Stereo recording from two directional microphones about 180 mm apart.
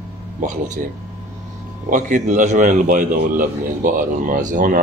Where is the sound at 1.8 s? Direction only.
45° right (ahead or behind).